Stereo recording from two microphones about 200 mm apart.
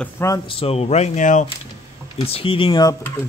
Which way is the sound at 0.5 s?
30° left (ahead or behind).